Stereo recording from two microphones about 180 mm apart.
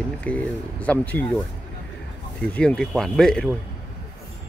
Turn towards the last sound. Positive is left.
turn(degrees=5)  # may be behind; listen again after turning